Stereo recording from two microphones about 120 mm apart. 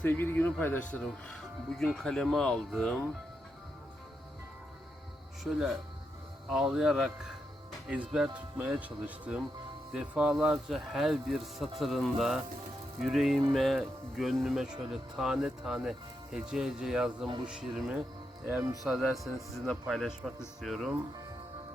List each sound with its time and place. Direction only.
0.0 s speech: 20° left (ahead or behind)
5.4 s speech: centre (ahead or behind)
18.4 s speech: 20° right (ahead or behind)
19.1 s speech: centre (ahead or behind)